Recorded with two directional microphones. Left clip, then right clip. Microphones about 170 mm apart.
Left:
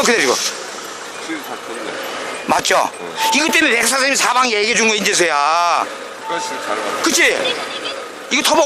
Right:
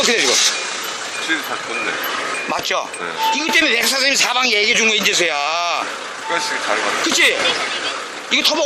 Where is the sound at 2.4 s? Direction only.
30° left (ahead or behind).